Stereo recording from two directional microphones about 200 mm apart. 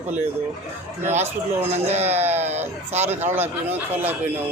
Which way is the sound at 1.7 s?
35° right (ahead or behind).